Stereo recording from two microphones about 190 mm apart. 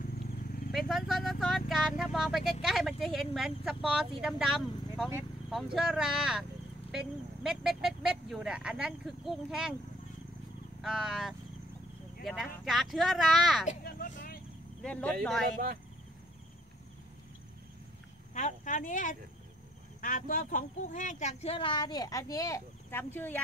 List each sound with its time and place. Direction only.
0.7 s speech: centre (ahead or behind)
10.8 s speech: 5° right (ahead or behind)
13.8 s vehicle: 45° left (ahead or behind)
14.8 s speech: 5° left (ahead or behind)
18.3 s a sound: 40° left (ahead or behind)
20.0 s speech: 45° left (ahead or behind); by 23.4 s 10° left (ahead or behind)